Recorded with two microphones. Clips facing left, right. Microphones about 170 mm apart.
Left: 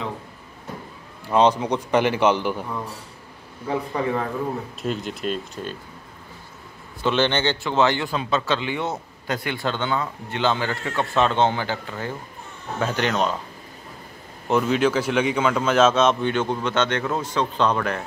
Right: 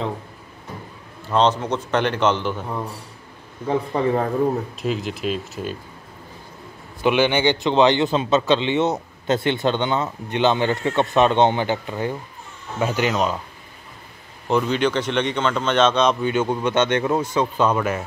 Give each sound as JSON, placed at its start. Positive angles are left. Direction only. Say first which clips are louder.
{"t": 1.3, "sound": "a man's voice", "louder": "left 1 dB", "side_deg": 10}
{"t": 3.6, "sound": "speech", "louder": "right 4 dB", "side_deg": -30}
{"t": 4.8, "sound": "speech", "louder": "right 1 dB", "side_deg": 0}
{"t": 7.0, "sound": "a man's voice", "louder": "right 3 dB", "side_deg": -10}
{"t": 14.5, "sound": "speech", "louder": "even", "side_deg": 5}